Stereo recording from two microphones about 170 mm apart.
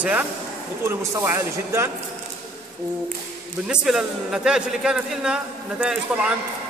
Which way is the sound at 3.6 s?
5° right (ahead or behind).